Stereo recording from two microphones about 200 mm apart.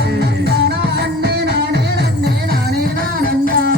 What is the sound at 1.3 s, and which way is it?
Music, 55° right (ahead or behind).